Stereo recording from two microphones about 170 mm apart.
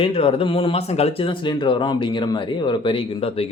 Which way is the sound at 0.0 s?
35° left (ahead or behind).